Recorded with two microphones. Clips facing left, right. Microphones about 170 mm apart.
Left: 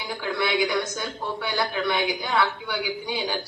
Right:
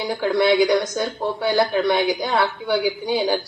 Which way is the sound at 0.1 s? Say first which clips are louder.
Right 8 dB; 45° right (ahead or behind).